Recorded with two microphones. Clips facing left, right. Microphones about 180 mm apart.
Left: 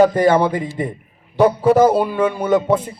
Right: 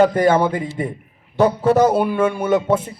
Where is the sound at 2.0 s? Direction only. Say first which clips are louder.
Even; 5° right (ahead or behind).